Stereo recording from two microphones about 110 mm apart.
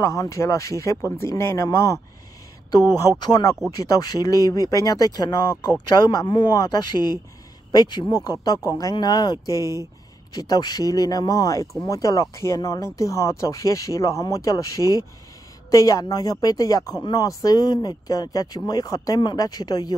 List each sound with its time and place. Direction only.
0.0 s a man's voice: 30° left (ahead or behind)